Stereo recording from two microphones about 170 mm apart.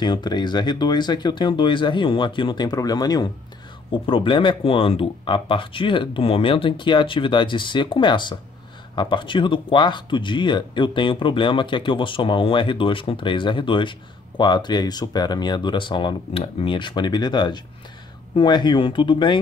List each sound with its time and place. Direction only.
0.0 s speech: 25° left (ahead or behind)